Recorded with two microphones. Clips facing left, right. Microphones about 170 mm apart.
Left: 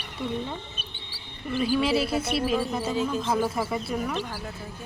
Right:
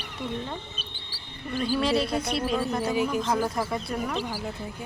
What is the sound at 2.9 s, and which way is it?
Speech, 10° right (ahead or behind).